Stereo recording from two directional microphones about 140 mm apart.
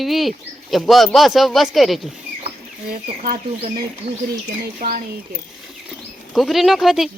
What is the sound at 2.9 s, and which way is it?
Speech, 90° right.